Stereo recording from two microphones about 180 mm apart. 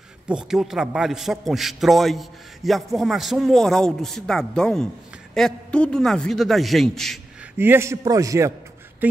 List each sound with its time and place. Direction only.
0.3 s a man's voice: 5° right (ahead or behind)
7.5 s a man's voice: 10° right (ahead or behind)